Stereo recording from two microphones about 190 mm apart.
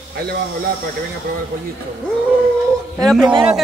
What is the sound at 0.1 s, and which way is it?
Speech, 55° right (ahead or behind).